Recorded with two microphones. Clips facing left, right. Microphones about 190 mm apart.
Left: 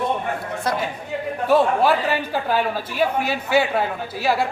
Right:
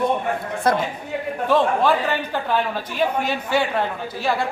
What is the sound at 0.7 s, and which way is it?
Speech, 55° right (ahead or behind).